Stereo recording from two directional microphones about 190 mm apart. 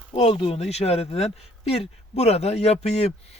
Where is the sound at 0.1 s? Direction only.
30° left (ahead or behind).